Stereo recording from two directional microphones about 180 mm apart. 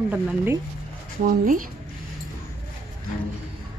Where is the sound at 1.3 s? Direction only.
50° right (ahead or behind).